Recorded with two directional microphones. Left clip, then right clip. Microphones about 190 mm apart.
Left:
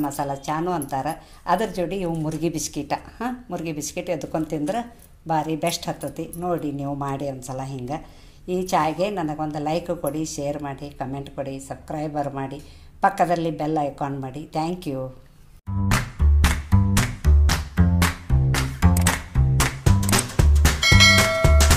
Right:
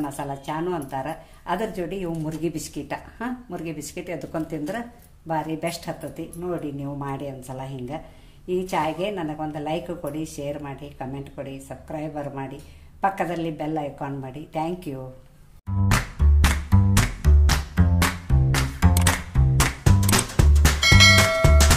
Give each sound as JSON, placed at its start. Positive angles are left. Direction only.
{"t": 0.0, "sound": "speech", "side_deg": 25}
{"t": 15.9, "sound": "music", "side_deg": 0}